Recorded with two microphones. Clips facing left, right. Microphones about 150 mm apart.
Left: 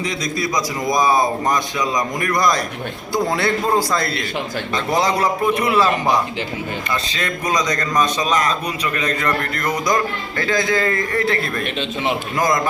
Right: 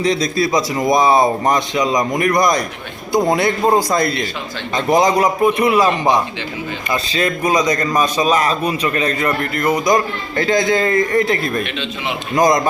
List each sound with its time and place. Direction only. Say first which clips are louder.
0.0 s a man's voice: right 6 dB; 35° right (ahead or behind); by 6.2 s 15° right (ahead or behind)
7.4 s a man's voice: right 3 dB; 10° right (ahead or behind)
8.6 s speech: right 5 dB; 30° right (ahead or behind)
9.2 s speech: right 4 dB; 10° right (ahead or behind)